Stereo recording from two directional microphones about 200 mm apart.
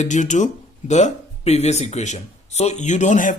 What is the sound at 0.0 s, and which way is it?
Speech, 40° left (ahead or behind).